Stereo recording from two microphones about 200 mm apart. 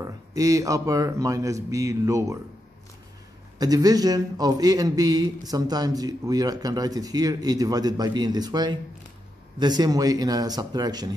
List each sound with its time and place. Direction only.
0.0 s a man's voice: 15° right (ahead or behind)
3.5 s speech: 20° right (ahead or behind)